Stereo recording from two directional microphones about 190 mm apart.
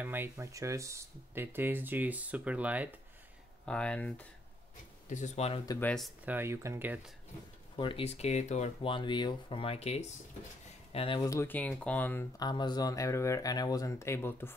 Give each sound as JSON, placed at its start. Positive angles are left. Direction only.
{"t": 0.0, "sound": "speech", "side_deg": -10}
{"t": 3.6, "sound": "speech", "side_deg": 5}
{"t": 5.1, "sound": "speech", "side_deg": 35}
{"t": 5.7, "sound": "speech", "side_deg": 10}
{"t": 6.3, "sound": "speech", "side_deg": -15}
{"t": 7.7, "sound": "speech", "side_deg": 25}
{"t": 11.2, "sound": "speech", "side_deg": 10}